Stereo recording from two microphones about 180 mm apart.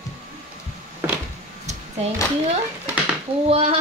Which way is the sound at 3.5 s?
35° right (ahead or behind).